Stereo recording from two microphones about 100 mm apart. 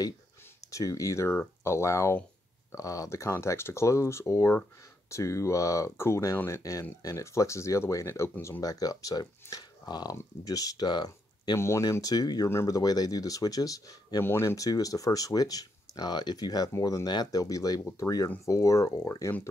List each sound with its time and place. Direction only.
0.7 s speech: 35° left (ahead or behind)
11.5 s speech: 30° left (ahead or behind)
14.2 s speech: 25° left (ahead or behind)